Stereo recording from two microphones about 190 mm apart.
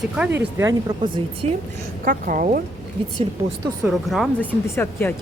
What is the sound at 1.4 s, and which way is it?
Speech, 35° right (ahead or behind).